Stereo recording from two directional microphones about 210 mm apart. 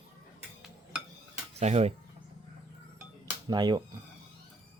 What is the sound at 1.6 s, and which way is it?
Speech, 30° right (ahead or behind).